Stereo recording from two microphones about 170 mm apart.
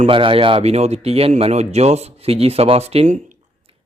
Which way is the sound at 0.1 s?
30° right (ahead or behind).